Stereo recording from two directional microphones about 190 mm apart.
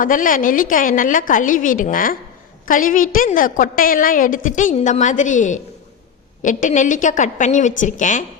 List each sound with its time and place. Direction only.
0.0 s a woman's voice: 45° left (ahead or behind)